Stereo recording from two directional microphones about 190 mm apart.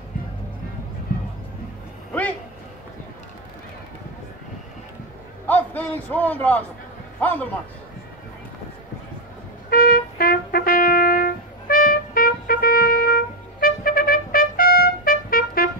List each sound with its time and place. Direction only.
5.5 s a man's voice: 10° left (ahead or behind)
9.7 s music: 50° left (ahead or behind)